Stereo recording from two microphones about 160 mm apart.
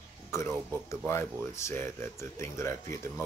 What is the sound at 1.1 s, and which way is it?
Speech, 15° left (ahead or behind).